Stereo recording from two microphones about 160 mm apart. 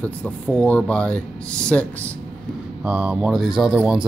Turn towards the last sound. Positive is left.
turn(degrees=-5)  # may be behind; listen again after turning